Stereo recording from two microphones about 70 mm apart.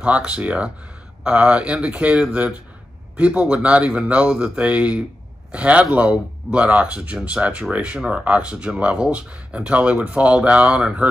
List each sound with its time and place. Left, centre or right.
0.0 s speech: centre